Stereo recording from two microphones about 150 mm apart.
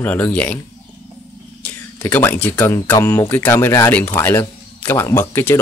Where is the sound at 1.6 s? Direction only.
10° left (ahead or behind).